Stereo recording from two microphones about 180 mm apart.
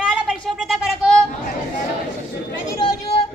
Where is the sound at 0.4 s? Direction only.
Centre (ahead or behind).